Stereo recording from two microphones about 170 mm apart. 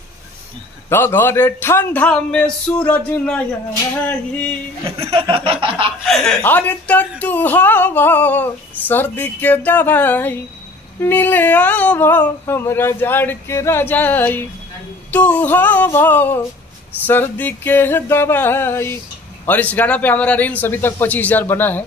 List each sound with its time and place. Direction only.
0.8 s speech: 15° left (ahead or behind)
5.0 s laughter: 35° right (ahead or behind)
6.0 s speech: 5° left (ahead or behind)